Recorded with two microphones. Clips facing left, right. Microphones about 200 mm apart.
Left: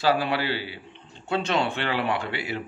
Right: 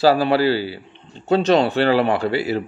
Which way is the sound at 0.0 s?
40° right (ahead or behind).